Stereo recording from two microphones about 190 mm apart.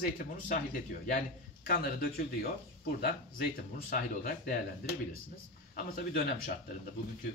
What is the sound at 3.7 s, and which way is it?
Speech, 50° left (ahead or behind).